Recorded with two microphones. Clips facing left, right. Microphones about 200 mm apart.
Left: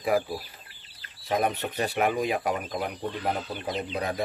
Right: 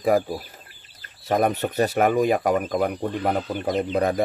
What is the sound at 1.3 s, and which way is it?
Speech, 45° right (ahead or behind).